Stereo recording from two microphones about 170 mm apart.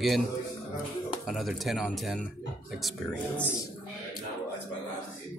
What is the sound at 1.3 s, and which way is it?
Speech, centre (ahead or behind).